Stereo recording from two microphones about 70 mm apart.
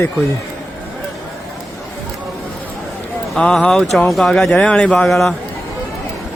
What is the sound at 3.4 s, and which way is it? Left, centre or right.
Speech, centre.